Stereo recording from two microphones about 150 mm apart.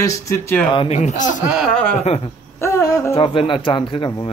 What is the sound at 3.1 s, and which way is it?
Speech, 35° left (ahead or behind).